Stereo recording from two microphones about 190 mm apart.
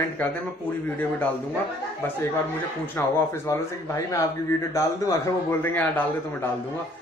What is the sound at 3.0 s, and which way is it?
Speech, 10° left (ahead or behind).